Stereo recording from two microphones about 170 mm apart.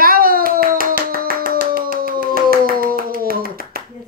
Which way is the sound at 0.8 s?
55° right (ahead or behind).